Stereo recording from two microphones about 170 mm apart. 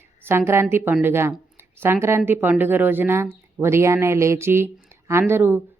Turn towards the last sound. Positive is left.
turn(degrees=-10)  # may be behind; listen again after turning